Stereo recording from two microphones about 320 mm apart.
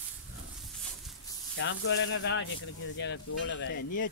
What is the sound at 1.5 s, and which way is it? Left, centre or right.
Speech, left.